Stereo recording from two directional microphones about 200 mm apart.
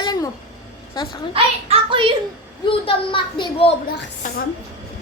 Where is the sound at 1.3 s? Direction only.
25° right (ahead or behind).